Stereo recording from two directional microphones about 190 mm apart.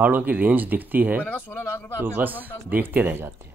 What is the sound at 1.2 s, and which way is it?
Speech, 10° left (ahead or behind).